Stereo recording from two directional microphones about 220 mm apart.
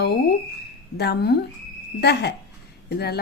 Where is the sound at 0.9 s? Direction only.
50° left (ahead or behind).